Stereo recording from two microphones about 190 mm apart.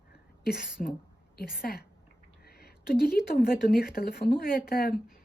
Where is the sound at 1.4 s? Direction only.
50° left (ahead or behind).